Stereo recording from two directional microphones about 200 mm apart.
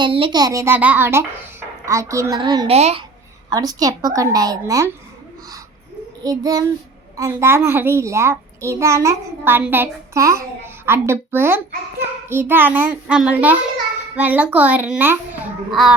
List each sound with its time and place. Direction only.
0.0 s a child's voice: 25° right (ahead or behind)
2.7 s a child's voice: 30° right (ahead or behind)
3.5 s a child's voice: 20° right (ahead or behind)
6.2 s child singing: 20° right (ahead or behind)
7.2 s a child's voice: 15° right (ahead or behind)